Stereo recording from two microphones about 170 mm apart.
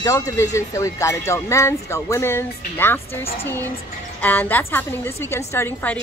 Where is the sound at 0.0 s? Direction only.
20° left (ahead or behind).